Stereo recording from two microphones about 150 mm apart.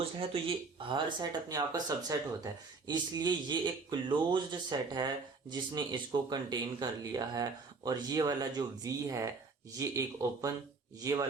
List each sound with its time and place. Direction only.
0.9 s speech: 30° right (ahead or behind)